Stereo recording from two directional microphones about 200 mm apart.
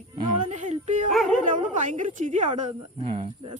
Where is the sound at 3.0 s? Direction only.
25° right (ahead or behind).